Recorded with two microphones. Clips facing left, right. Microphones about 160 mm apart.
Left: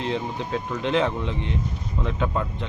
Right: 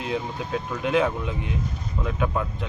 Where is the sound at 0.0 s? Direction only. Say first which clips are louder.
Left 1 dB; 10° right (ahead or behind).